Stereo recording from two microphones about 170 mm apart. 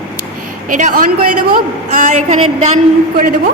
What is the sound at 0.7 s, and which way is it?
A woman's voice, 50° right (ahead or behind).